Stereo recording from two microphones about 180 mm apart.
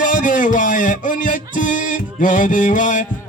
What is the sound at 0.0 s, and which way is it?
Music, 45° left (ahead or behind).